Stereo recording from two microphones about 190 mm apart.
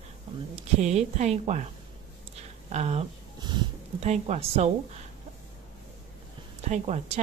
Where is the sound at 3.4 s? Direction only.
25° right (ahead or behind).